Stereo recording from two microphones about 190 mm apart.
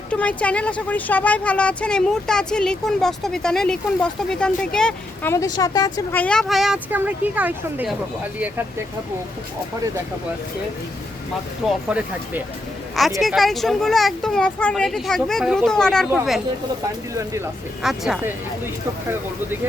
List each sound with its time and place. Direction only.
0.1 s speech: 5° left (ahead or behind)
5.3 s speech: 20° left (ahead or behind)
6.1 s speech: 5° left (ahead or behind)
11.9 s speech: 5° right (ahead or behind)
17.2 s speech: 15° right (ahead or behind)
17.8 s speech: centre (ahead or behind)